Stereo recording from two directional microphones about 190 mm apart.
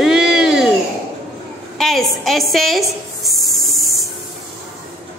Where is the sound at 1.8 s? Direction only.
Centre (ahead or behind).